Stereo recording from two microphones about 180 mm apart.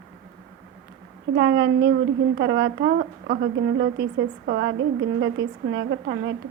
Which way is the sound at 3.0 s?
55° right (ahead or behind).